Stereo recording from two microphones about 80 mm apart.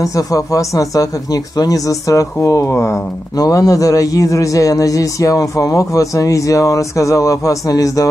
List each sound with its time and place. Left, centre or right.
0.0 s speech: left
3.3 s speech: left